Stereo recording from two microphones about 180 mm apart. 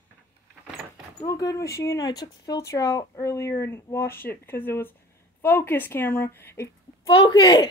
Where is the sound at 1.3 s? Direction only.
20° left (ahead or behind).